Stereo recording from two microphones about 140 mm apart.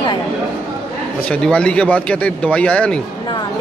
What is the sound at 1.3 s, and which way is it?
Speech, 5° left (ahead or behind).